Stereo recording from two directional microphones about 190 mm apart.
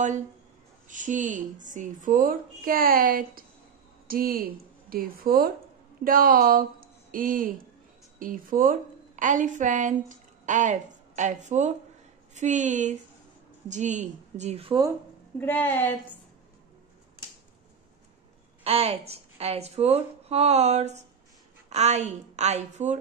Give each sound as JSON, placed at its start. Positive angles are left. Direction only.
{"t": 0.8, "sound": "a woman's voice", "side_deg": -40}
{"t": 15.3, "sound": "a woman's voice", "side_deg": 10}
{"t": 18.6, "sound": "a woman's voice", "side_deg": -30}